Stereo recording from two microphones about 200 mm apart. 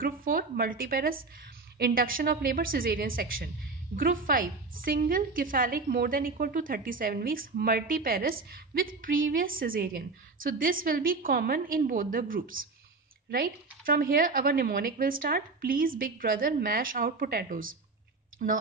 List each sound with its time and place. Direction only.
0.0 s a woman's voice: 45° right (ahead or behind)